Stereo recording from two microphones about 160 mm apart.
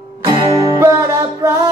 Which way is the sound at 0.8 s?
20° right (ahead or behind).